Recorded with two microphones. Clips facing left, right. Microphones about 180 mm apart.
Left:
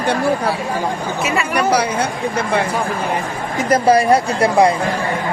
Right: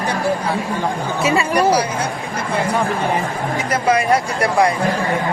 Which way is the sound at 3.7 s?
35° left (ahead or behind).